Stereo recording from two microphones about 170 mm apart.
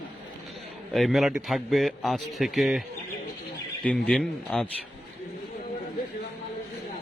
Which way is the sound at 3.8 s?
5° left (ahead or behind).